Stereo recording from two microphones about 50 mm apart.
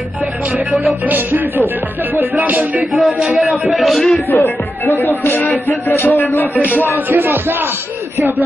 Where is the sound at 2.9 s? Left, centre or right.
Centre.